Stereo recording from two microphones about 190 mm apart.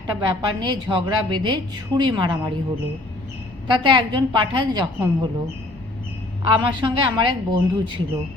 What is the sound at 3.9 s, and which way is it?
Speech, 25° right (ahead or behind).